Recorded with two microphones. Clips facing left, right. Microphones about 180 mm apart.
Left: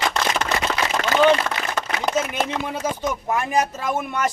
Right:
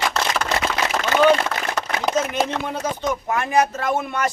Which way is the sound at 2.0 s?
5° left (ahead or behind).